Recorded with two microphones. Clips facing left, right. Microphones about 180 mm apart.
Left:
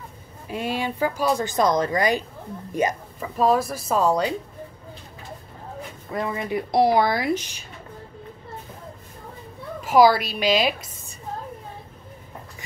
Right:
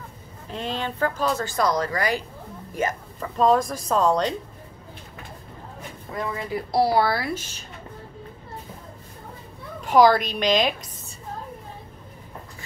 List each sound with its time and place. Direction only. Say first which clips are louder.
0.5 s speech: left 3 dB; 10° left (ahead or behind)
3.2 s speech: right 1 dB; 5° left (ahead or behind)
6.1 s speech: left 3 dB; 20° left (ahead or behind)
9.8 s speech: even; 5° left (ahead or behind)